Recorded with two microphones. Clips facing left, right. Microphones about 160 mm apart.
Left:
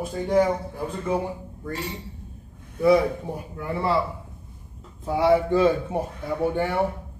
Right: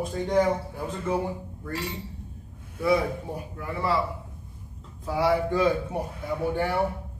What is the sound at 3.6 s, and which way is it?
Speech, 30° left (ahead or behind).